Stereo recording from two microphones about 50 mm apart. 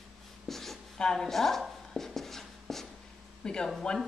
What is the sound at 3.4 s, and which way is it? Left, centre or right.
Speech, centre.